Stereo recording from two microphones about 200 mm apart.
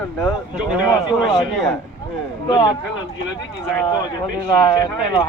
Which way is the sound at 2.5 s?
20° left (ahead or behind).